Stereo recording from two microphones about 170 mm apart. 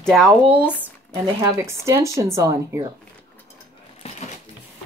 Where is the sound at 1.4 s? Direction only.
15° right (ahead or behind).